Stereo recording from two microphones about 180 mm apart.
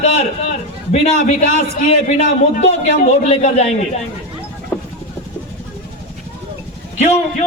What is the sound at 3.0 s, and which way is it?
Speech, 40° left (ahead or behind).